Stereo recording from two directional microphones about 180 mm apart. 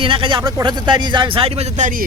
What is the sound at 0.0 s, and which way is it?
Speech, 30° right (ahead or behind).